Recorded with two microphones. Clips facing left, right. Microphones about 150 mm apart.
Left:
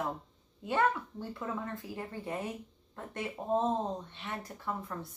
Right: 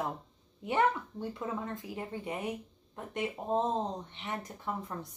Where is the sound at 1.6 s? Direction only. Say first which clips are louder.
Right 1 dB; 20° right (ahead or behind).